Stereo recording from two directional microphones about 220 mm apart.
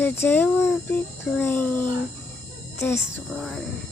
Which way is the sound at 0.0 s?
10° left (ahead or behind).